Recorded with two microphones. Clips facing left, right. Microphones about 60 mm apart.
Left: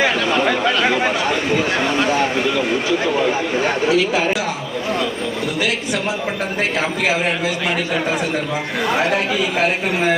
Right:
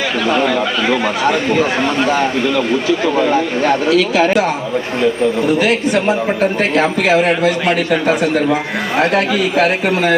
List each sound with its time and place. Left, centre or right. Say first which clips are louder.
3.8 s speech: right 3 dB; right
5.5 s a man's voice: right 7 dB; right
9.0 s speech: right 7 dB; right